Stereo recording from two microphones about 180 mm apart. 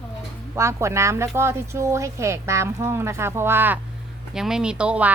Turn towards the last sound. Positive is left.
turn(degrees=-5)  # may be behind; listen again after turning